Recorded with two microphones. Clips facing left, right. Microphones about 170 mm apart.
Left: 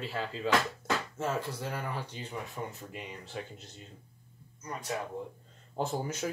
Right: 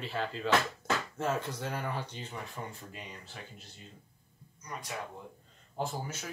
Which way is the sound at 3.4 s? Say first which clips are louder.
Left 10 dB; 25° left (ahead or behind).